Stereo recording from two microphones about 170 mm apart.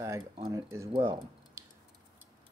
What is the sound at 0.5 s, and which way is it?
Speech, 15° right (ahead or behind).